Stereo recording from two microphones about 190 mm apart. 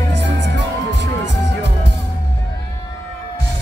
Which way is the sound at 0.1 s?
65° right (ahead or behind).